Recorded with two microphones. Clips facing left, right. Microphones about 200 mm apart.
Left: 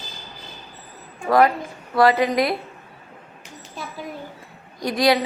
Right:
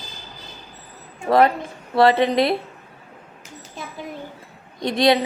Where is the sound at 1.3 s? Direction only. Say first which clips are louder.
Right 1 dB; 25° right (ahead or behind).